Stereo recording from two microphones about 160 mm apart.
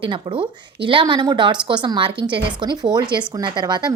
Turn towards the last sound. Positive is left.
turn(degrees=-25)  # may be behind; listen again after turning